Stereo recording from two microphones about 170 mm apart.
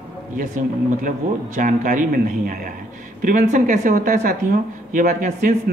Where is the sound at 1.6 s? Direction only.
50° right (ahead or behind).